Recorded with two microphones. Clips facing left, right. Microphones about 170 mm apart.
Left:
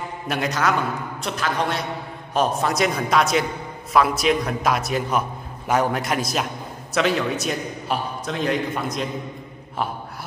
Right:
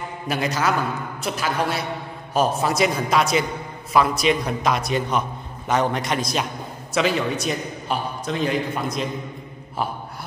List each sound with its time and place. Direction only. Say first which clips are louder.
0.3 s a man's voice: even; centre (ahead or behind)